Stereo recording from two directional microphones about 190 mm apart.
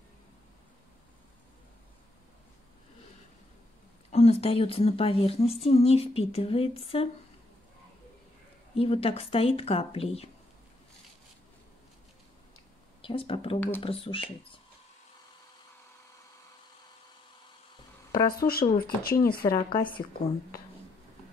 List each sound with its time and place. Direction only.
4.1 s speech: 35° left (ahead or behind)
8.7 s speech: 30° left (ahead or behind)
13.0 s speech: 30° left (ahead or behind)
13.6 s speech: 10° left (ahead or behind)
13.8 s speech: 30° left (ahead or behind)
18.1 s speech: 20° left (ahead or behind)
18.5 s speech: 50° left (ahead or behind)
19.5 s speech: 25° left (ahead or behind)